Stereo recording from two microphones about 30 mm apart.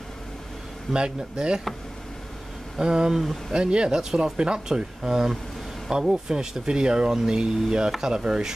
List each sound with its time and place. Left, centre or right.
0.9 s speech: right
2.8 s speech: right